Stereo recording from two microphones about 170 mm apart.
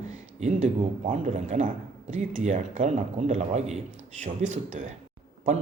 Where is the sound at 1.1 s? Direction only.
45° right (ahead or behind).